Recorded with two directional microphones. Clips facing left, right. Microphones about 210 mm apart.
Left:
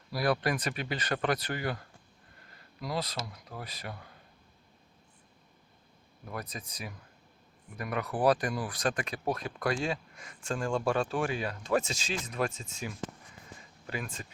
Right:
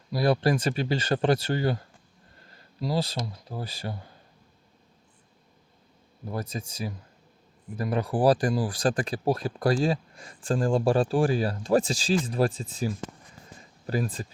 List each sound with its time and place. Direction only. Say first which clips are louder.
0.1 s speech: right 6 dB; 25° right (ahead or behind)
2.8 s speech: right 6 dB; 30° right (ahead or behind)
6.2 s speech: right 7 dB; 30° right (ahead or behind)
13.6 s a sound: right 10 dB; 35° right (ahead or behind)